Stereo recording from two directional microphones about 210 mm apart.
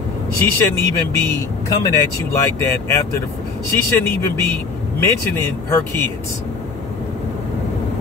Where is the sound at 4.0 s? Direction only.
10° left (ahead or behind).